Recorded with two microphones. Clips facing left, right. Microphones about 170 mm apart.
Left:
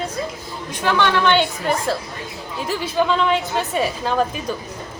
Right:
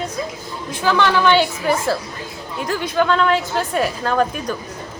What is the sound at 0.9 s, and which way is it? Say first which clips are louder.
A woman's voice: right 2 dB; 5° right (ahead or behind).